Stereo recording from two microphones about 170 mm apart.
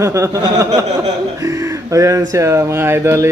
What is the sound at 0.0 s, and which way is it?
Speech, 20° right (ahead or behind).